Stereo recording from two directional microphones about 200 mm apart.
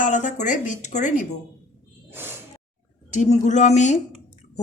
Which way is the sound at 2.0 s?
10° right (ahead or behind).